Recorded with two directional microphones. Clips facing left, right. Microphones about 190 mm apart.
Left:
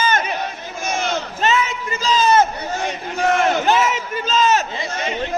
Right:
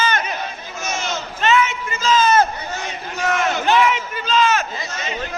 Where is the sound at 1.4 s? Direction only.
35° left (ahead or behind).